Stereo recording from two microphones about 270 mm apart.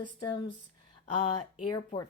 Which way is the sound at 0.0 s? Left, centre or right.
Centre.